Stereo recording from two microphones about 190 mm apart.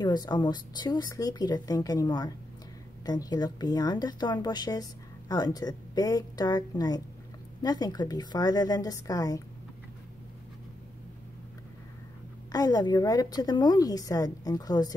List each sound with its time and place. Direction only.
0.0 s speech: 20° left (ahead or behind)
12.5 s speech: 20° left (ahead or behind)